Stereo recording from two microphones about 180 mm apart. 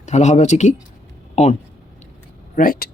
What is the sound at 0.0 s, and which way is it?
Speech, 40° left (ahead or behind).